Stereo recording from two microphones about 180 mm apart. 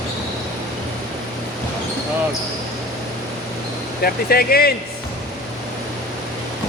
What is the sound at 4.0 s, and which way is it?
Speech, 55° left (ahead or behind).